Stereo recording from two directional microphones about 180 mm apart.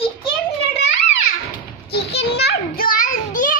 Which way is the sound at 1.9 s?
65° left (ahead or behind).